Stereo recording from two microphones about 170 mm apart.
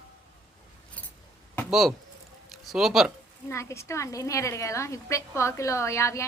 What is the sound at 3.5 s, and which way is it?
A woman's voice, 15° left (ahead or behind).